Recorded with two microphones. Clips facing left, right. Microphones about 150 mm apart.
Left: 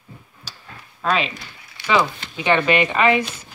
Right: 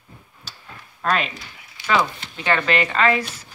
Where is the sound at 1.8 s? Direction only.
65° left (ahead or behind).